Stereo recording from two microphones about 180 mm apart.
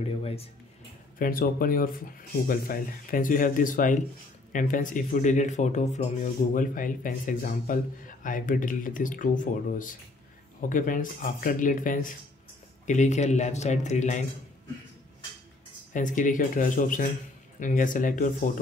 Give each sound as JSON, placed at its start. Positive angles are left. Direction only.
{"t": 0.2, "sound": "music", "side_deg": 35}
{"t": 1.2, "sound": "speech", "side_deg": 55}
{"t": 15.9, "sound": "speech", "side_deg": 45}